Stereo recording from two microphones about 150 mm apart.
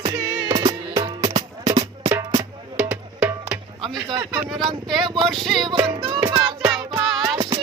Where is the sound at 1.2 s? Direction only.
50° right (ahead or behind).